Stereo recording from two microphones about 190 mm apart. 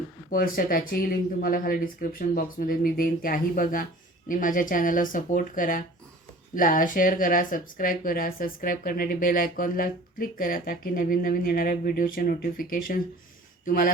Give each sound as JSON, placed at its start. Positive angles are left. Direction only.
{"t": 0.3, "sound": "speech", "side_deg": 50}